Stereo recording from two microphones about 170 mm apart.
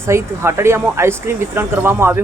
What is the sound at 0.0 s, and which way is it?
Speech, 15° right (ahead or behind).